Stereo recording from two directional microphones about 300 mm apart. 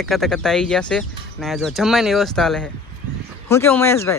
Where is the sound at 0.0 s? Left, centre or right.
Centre.